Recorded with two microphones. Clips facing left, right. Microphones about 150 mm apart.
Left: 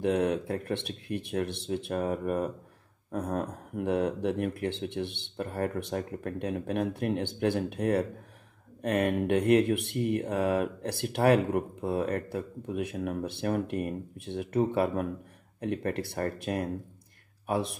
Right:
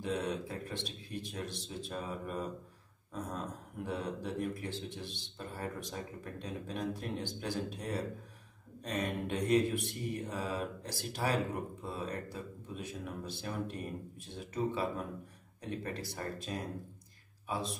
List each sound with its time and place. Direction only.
0.0 s mantra: 60° left (ahead or behind)
17.5 s speech: 65° left (ahead or behind)